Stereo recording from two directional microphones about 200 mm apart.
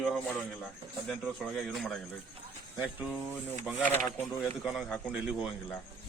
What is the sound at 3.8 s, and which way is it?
Speech, 10° left (ahead or behind).